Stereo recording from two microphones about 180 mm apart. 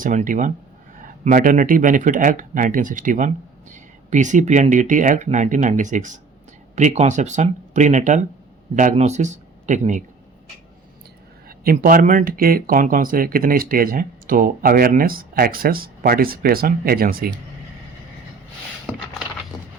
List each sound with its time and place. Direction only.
0.0 s speech: 45° right (ahead or behind)
11.4 s speech: 55° right (ahead or behind)